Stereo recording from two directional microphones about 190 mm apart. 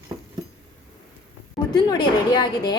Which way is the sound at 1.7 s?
20° left (ahead or behind).